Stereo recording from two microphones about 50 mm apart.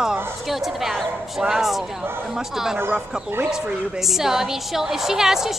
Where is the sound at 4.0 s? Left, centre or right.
Centre.